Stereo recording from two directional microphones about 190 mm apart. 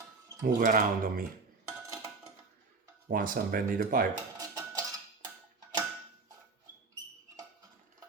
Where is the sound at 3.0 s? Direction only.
45° right (ahead or behind).